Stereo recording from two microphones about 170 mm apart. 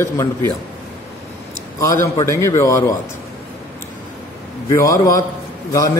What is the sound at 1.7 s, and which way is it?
A man's voice, 15° left (ahead or behind).